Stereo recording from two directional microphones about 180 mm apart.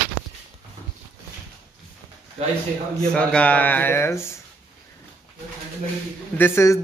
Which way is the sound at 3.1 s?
5° left (ahead or behind).